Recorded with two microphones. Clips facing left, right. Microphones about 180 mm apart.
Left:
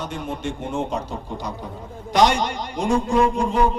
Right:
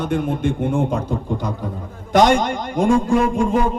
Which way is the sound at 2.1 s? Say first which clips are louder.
Right 4 dB; 50° right (ahead or behind).